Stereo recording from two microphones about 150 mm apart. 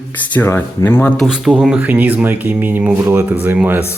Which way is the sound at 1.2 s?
5° right (ahead or behind).